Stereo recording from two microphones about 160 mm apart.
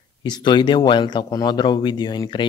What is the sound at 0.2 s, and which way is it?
Speech, 30° left (ahead or behind).